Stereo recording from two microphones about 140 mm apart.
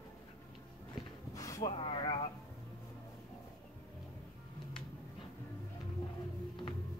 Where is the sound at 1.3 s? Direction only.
25° left (ahead or behind).